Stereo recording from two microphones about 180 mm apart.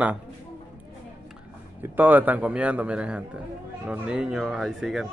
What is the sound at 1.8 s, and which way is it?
Speech, 10° right (ahead or behind).